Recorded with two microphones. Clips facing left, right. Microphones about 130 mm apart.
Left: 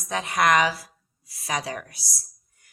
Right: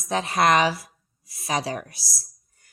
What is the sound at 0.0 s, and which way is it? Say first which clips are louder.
A woman's voice: right 2 dB; 30° right (ahead or behind).